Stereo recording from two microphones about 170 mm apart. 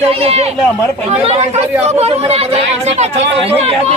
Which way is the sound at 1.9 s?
35° right (ahead or behind).